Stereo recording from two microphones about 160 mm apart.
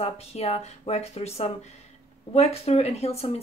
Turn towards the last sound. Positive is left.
turn(degrees=40)  # may be behind; listen again after turning